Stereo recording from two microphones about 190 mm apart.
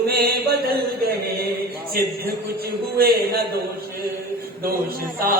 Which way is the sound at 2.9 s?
55° right (ahead or behind).